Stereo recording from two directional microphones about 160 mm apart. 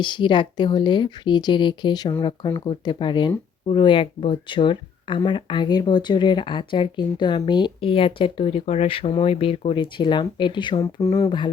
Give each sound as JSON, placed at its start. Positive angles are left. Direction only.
{"t": 0.0, "sound": "a woman's voice", "side_deg": 30}